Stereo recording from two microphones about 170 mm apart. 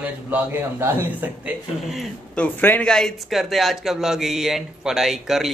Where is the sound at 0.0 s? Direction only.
10° right (ahead or behind).